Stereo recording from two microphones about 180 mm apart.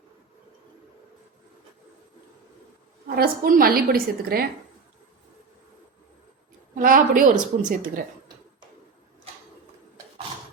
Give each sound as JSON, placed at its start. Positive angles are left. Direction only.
{"t": 3.2, "sound": "a woman's voice", "side_deg": -55}
{"t": 6.7, "sound": "a woman's voice", "side_deg": -50}